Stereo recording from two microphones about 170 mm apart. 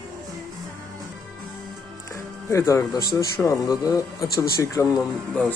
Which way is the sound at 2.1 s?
20° left (ahead or behind).